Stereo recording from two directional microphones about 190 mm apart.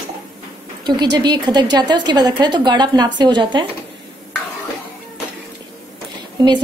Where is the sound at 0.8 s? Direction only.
20° right (ahead or behind).